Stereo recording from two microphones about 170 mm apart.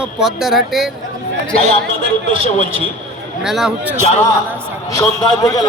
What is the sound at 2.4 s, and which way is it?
Speech, 30° right (ahead or behind).